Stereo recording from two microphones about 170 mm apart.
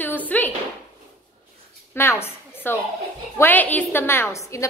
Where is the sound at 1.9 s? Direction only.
15° left (ahead or behind).